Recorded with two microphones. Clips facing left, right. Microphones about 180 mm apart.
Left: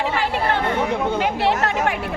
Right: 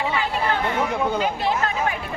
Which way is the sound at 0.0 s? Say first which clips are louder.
Left 2 dB; 65° left (ahead or behind).